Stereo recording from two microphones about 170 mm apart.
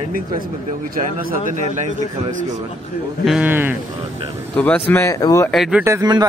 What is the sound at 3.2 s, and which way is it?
Speech, 5° right (ahead or behind).